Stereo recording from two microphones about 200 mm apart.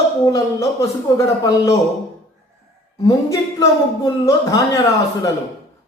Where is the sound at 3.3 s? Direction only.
15° left (ahead or behind).